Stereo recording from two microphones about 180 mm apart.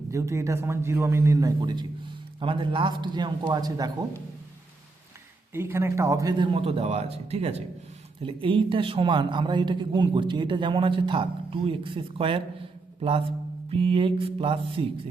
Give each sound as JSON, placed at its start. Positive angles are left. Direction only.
{"t": 0.1, "sound": "a man's voice", "side_deg": -15}
{"t": 5.5, "sound": "a man's voice", "side_deg": -15}